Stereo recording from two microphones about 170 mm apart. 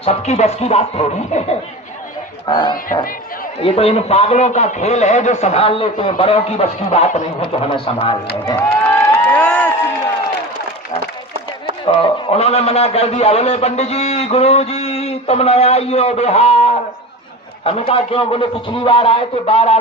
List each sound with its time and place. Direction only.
0.0 s a man's voice: 40° left (ahead or behind)
2.5 s a man's voice: 30° left (ahead or behind)
7.4 s a man's voice: 30° left (ahead or behind)
8.4 s crowd: 10° left (ahead or behind)
11.9 s a man's voice: 35° left (ahead or behind)